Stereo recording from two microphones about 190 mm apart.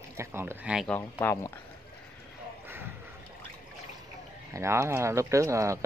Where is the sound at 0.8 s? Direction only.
10° left (ahead or behind).